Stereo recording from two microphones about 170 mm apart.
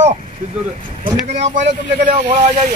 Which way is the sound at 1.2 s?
45° right (ahead or behind).